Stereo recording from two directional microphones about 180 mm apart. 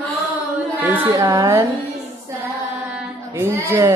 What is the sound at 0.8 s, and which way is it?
Speech, 10° right (ahead or behind).